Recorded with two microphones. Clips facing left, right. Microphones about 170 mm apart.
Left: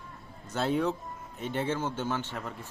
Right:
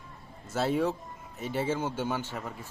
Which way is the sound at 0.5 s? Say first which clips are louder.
Right 1 dB; 5° right (ahead or behind).